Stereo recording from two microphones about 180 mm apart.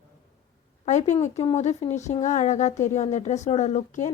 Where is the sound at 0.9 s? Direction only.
40° left (ahead or behind).